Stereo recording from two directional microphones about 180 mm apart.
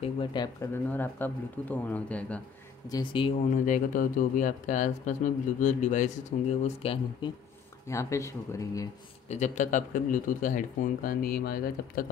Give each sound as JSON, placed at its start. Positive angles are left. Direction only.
{"t": 0.0, "sound": "speech", "side_deg": 25}
{"t": 0.8, "sound": "speech", "side_deg": 10}
{"t": 2.9, "sound": "speech", "side_deg": 25}
{"t": 3.6, "sound": "speech", "side_deg": 45}
{"t": 7.9, "sound": "speech", "side_deg": 15}
{"t": 9.3, "sound": "speech", "side_deg": 40}